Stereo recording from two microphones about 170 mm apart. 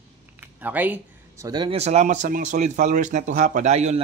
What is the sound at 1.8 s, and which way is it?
Speech, 40° right (ahead or behind).